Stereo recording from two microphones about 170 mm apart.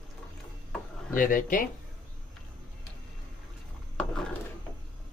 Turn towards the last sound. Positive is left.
turn(degrees=5)  # may be behind; listen again after turning